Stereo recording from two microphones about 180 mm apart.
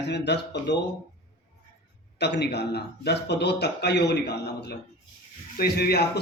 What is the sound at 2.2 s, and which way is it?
A man's voice, 70° left (ahead or behind).